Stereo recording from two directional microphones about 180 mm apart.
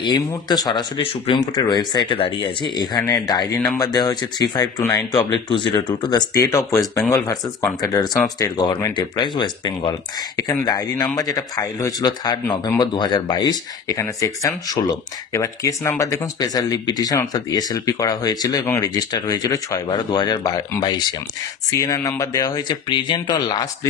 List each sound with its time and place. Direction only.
0.0 s speech: 25° left (ahead or behind)